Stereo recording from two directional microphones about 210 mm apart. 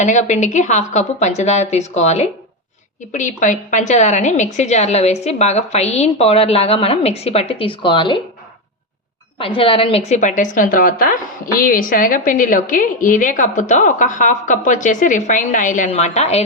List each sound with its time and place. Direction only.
0.0 s a woman's voice: 35° left (ahead or behind)
9.6 s a woman's voice: 25° left (ahead or behind)